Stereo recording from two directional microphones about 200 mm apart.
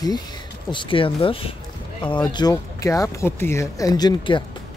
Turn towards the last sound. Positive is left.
turn(degrees=20)  # may be behind; listen again after turning